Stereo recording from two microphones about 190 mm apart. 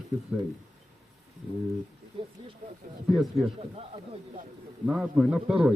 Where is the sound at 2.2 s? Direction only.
25° right (ahead or behind).